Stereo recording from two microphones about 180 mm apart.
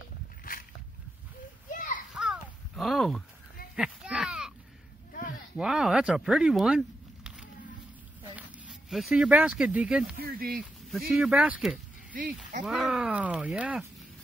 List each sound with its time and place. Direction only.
0.4 s a sound: 50° left (ahead or behind)
1.7 s children playing: 50° left (ahead or behind)
2.1 s a sound: centre (ahead or behind)
5.6 s speech: 5° right (ahead or behind)
8.2 s speech: 5° right (ahead or behind)
10.2 s speech: 55° right (ahead or behind)
10.9 s speech: centre (ahead or behind)
12.1 s speech: 50° right (ahead or behind)
12.6 s speech: 5° right (ahead or behind)